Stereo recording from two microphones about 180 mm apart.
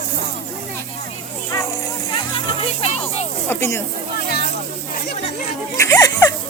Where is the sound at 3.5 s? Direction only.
15° left (ahead or behind).